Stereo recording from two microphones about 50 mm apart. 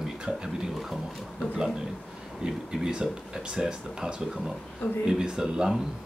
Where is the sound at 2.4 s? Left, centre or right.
Centre.